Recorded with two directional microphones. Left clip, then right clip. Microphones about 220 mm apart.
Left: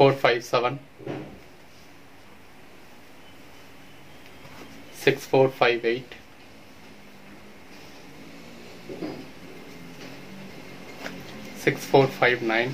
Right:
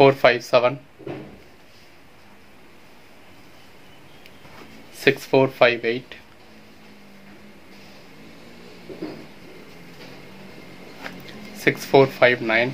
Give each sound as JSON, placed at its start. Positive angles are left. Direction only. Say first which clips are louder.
{"t": 0.0, "sound": "speech", "louder": "right 4 dB", "side_deg": -50}
{"t": 5.0, "sound": "speech", "louder": "right 2 dB", "side_deg": -50}
{"t": 11.6, "sound": "speech", "louder": "right 4 dB", "side_deg": -50}